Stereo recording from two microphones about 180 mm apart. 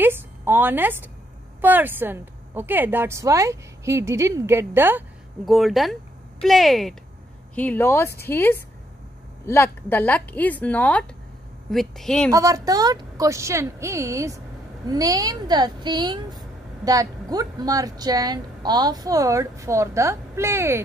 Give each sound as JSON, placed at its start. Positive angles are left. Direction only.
{"t": 0.0, "sound": "a sound", "side_deg": -10}
{"t": 1.6, "sound": "a woman's voice", "side_deg": -10}
{"t": 5.4, "sound": "speech", "side_deg": 0}
{"t": 12.3, "sound": "a woman's voice", "side_deg": -20}